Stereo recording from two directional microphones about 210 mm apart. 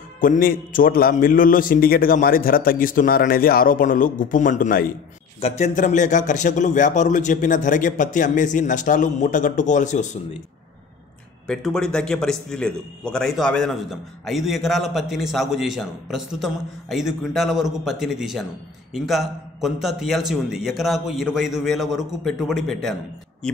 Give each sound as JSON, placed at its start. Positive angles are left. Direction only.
{"t": 0.2, "sound": "a man's voice", "side_deg": 40}
{"t": 11.4, "sound": "a man's voice", "side_deg": 5}